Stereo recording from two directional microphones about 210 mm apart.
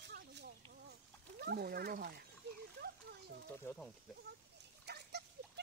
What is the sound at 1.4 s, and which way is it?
Speech, 50° right (ahead or behind).